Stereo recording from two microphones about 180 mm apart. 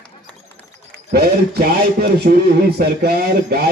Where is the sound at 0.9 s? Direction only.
60° right (ahead or behind).